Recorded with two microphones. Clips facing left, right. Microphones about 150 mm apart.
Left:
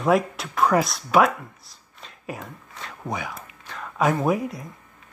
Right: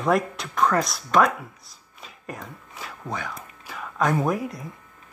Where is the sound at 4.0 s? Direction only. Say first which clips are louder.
Left 2 dB; 5° left (ahead or behind).